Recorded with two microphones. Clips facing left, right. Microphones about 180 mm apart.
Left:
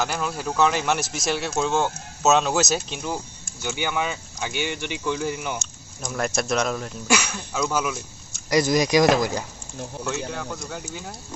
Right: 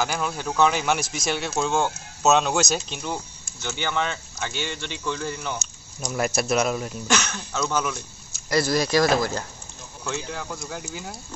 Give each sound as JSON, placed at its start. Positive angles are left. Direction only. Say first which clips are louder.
{"t": 0.0, "sound": "speech", "louder": "even", "side_deg": 0}
{"t": 6.1, "sound": "speech", "louder": "right 1 dB", "side_deg": -5}
{"t": 7.1, "sound": "speech", "louder": "left 3 dB", "side_deg": 10}
{"t": 8.5, "sound": "speech", "louder": "left 2 dB", "side_deg": 15}
{"t": 10.0, "sound": "speech", "louder": "even", "side_deg": 0}